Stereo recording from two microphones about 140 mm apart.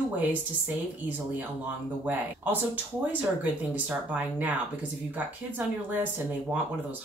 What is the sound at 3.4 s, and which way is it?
Speech, 10° right (ahead or behind).